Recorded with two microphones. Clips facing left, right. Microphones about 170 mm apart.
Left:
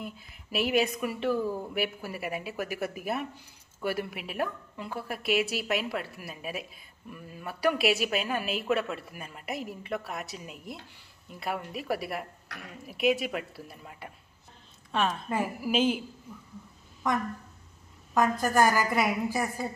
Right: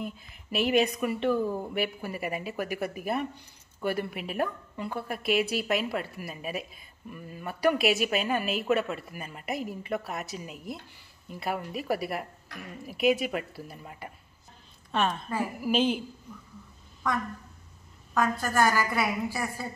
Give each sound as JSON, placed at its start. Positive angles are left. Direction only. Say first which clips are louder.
{"t": 0.0, "sound": "a woman's voice", "louder": "right 3 dB", "side_deg": 0}
{"t": 18.4, "sound": "a woman's voice", "louder": "left 1 dB", "side_deg": 15}